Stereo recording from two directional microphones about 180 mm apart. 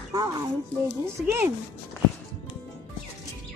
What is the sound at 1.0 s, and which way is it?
Speech, 10° right (ahead or behind).